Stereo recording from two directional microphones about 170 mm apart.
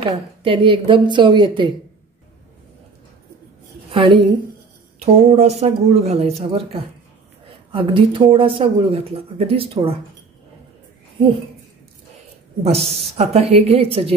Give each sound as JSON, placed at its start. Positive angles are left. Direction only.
{"t": 0.1, "sound": "a woman's voice", "side_deg": -30}
{"t": 3.9, "sound": "speech", "side_deg": -30}
{"t": 12.6, "sound": "speech", "side_deg": -40}